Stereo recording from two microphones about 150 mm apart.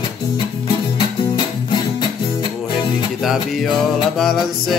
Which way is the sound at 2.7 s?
35° left (ahead or behind).